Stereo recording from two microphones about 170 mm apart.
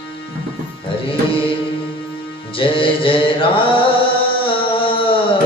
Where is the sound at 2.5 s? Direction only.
30° left (ahead or behind).